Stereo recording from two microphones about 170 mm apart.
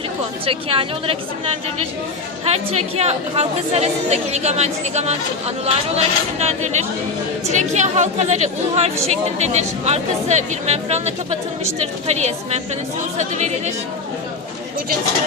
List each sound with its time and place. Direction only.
0.4 s a woman's voice: 35° right (ahead or behind)
2.4 s a woman's voice: 40° right (ahead or behind)